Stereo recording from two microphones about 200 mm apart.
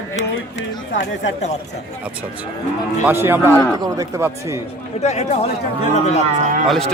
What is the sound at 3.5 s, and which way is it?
Speech, 10° left (ahead or behind).